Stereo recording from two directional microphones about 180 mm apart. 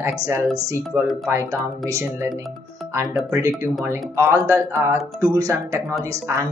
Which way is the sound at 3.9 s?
15° right (ahead or behind).